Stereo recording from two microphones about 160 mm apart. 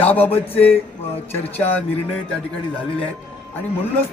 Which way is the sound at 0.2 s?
40° left (ahead or behind).